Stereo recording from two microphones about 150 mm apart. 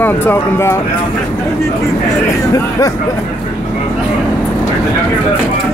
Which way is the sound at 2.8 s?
20° left (ahead or behind).